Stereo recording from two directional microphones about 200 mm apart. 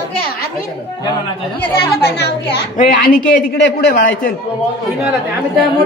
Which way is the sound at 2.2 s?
50° left (ahead or behind).